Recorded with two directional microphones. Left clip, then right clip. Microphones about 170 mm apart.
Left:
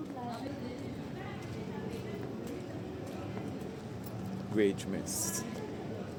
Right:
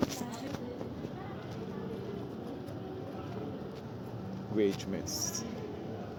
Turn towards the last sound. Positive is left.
turn(degrees=0)  # may be behind; listen again after turning